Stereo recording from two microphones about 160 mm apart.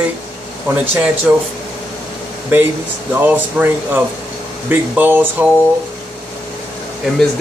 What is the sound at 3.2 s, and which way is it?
Speech, 10° right (ahead or behind).